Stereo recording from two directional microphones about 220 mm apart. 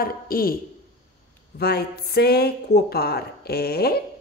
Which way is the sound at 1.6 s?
45° left (ahead or behind).